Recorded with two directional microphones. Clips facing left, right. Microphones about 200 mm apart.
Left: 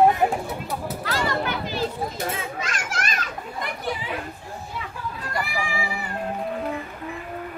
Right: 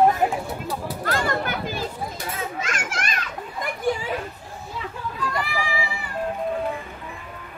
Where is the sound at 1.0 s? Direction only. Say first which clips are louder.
Right 1 dB; 50° right (ahead or behind).